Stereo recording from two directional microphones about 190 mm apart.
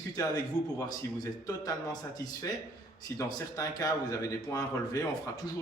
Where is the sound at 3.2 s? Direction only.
20° left (ahead or behind).